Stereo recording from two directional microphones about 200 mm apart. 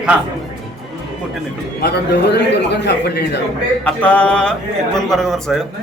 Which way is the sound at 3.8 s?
5° left (ahead or behind).